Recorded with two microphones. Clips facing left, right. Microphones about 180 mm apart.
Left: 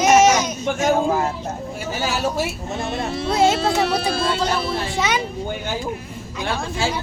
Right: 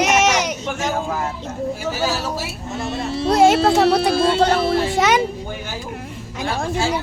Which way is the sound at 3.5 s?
60° right (ahead or behind).